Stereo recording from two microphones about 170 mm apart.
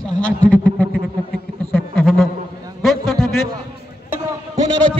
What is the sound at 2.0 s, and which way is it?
Speech, centre (ahead or behind).